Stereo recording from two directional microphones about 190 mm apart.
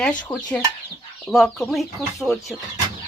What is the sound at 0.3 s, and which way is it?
Speech, 20° left (ahead or behind).